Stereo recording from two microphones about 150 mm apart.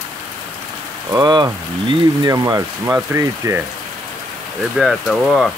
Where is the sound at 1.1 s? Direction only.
25° right (ahead or behind).